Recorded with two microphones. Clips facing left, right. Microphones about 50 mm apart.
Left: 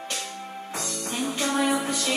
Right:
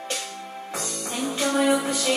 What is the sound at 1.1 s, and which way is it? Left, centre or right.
Music, left.